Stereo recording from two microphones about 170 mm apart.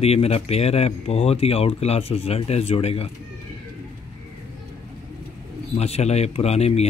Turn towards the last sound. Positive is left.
turn(degrees=40)  # may be behind; listen again after turning